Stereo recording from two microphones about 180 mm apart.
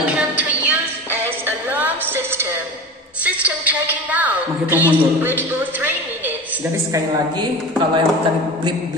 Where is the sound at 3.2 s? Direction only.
10° right (ahead or behind).